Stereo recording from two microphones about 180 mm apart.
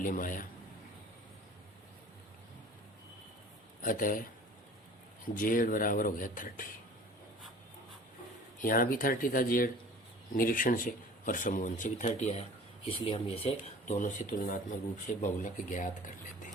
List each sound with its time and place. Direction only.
0.0 s a man's voice: 50° left (ahead or behind)
3.8 s a man's voice: 50° left (ahead or behind)
5.3 s a man's voice: 50° left (ahead or behind)
8.6 s a man's voice: 50° left (ahead or behind)